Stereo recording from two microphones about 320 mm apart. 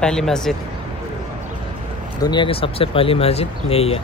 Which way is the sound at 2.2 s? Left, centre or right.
Centre.